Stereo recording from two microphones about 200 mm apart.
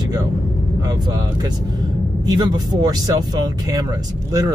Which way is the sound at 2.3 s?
20° right (ahead or behind).